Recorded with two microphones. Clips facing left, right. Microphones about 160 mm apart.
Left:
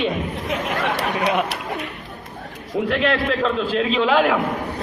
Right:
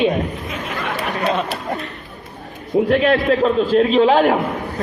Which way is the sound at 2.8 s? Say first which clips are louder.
Right 4 dB; 45° right (ahead or behind).